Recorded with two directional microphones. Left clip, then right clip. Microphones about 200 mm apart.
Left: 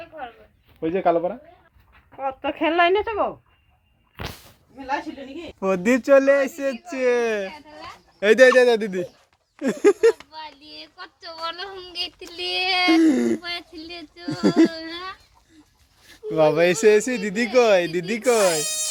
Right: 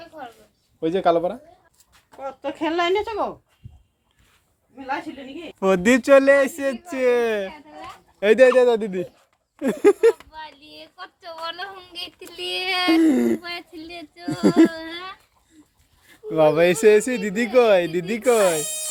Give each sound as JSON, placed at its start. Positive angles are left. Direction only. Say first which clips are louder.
{"t": 0.8, "sound": "speech", "louder": "right 1 dB", "side_deg": -10}
{"t": 2.1, "sound": "speech", "louder": "left 4 dB", "side_deg": 45}
{"t": 5.5, "sound": "speech", "louder": "right 3 dB", "side_deg": -15}
{"t": 13.0, "sound": "speech", "louder": "even", "side_deg": 0}
{"t": 16.0, "sound": "speech", "louder": "right 1 dB", "side_deg": 0}